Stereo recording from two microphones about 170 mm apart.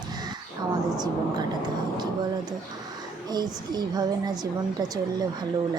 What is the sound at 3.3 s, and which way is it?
Speech, 25° right (ahead or behind).